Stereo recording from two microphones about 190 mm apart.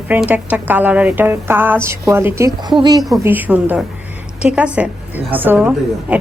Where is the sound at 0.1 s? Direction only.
10° right (ahead or behind).